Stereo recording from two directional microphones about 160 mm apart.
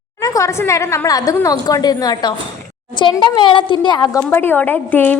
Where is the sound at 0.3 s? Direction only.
20° left (ahead or behind).